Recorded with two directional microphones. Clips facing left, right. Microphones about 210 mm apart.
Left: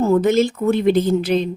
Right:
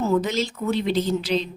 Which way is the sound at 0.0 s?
55° left (ahead or behind).